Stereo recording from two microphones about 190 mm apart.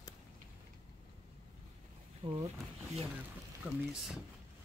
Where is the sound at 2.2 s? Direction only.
30° right (ahead or behind).